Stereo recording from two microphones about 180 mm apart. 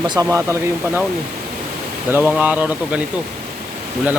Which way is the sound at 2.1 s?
10° right (ahead or behind).